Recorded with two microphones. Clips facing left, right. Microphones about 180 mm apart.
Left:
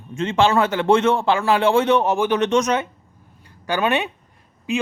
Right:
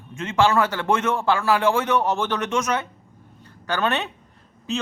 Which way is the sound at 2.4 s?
35° left (ahead or behind).